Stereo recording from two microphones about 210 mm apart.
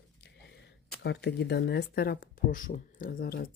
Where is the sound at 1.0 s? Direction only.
55° left (ahead or behind).